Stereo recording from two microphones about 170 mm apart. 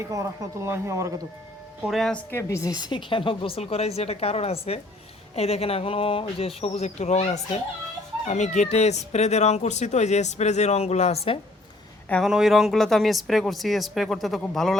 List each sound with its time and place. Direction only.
0.0 s speech: 15° right (ahead or behind)
1.9 s speech: centre (ahead or behind)
2.3 s speech: 15° left (ahead or behind); by 11.2 s 40° left (ahead or behind)
12.0 s speech: 5° left (ahead or behind)